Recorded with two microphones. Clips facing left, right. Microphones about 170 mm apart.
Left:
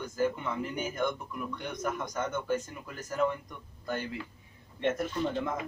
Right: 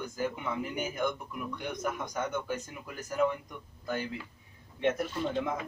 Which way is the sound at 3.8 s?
5° right (ahead or behind).